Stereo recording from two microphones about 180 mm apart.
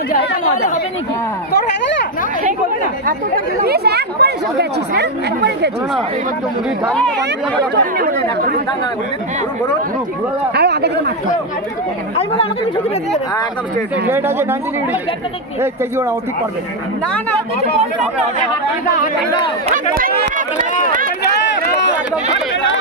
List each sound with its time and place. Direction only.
0.1 s speech: 65° left (ahead or behind)
3.6 s speech: 65° right (ahead or behind)
7.7 s speech: 50° right (ahead or behind)
10.5 s speech: 65° right (ahead or behind)
14.0 s speech: 15° right (ahead or behind)
19.7 s chatter: 55° right (ahead or behind)